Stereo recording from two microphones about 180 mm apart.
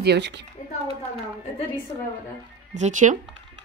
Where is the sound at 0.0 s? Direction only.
65° right (ahead or behind).